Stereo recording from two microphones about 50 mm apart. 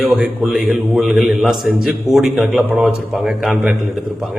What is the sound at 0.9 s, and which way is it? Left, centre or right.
A man's voice, centre.